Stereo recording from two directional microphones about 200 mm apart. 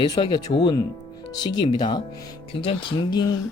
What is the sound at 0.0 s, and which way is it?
Speech, 20° left (ahead or behind).